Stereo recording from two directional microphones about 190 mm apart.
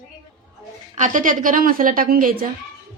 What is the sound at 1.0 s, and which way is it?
A woman's voice, 45° right (ahead or behind).